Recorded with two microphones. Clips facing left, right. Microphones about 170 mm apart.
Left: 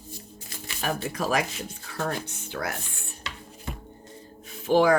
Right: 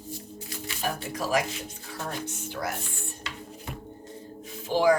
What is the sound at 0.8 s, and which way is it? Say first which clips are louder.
Speech: left 3 dB; 70° left (ahead or behind).